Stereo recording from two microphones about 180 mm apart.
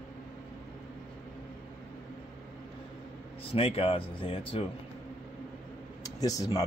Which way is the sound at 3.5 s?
30° left (ahead or behind).